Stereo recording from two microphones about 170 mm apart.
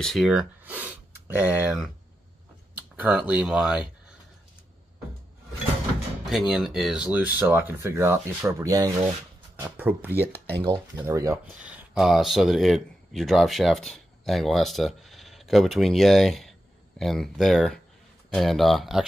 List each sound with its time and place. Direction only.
0.0 s speech: centre (ahead or behind)
3.0 s speech: 10° right (ahead or behind)
6.2 s speech: 5° right (ahead or behind)
10.3 s speech: 10° left (ahead or behind)
10.6 s speech: 25° right (ahead or behind)
11.6 s speech: 5° right (ahead or behind)